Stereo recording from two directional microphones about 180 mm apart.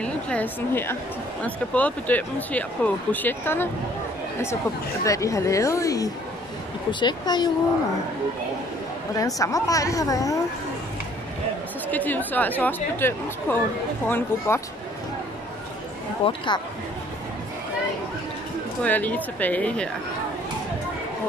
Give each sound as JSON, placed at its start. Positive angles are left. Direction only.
{"t": 0.0, "sound": "speech", "side_deg": 5}
{"t": 5.0, "sound": "speech", "side_deg": 15}
{"t": 9.1, "sound": "speech", "side_deg": 20}
{"t": 11.9, "sound": "speech", "side_deg": 10}
{"t": 16.3, "sound": "speech", "side_deg": 25}
{"t": 18.8, "sound": "speech", "side_deg": 10}